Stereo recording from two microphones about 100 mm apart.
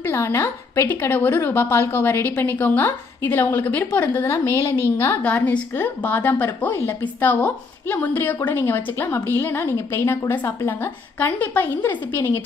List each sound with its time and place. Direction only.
0.1 s a woman's voice: 25° left (ahead or behind)